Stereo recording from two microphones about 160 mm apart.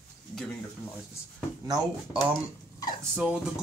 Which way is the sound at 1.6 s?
25° right (ahead or behind).